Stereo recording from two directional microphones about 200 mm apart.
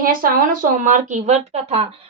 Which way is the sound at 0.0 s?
45° right (ahead or behind).